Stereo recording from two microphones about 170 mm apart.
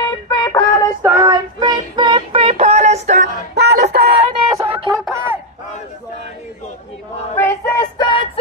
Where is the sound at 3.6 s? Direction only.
80° right.